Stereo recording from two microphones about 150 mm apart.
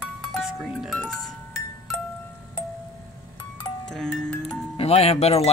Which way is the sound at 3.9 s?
5° left (ahead or behind).